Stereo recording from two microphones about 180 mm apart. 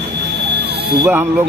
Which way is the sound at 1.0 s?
10° right (ahead or behind).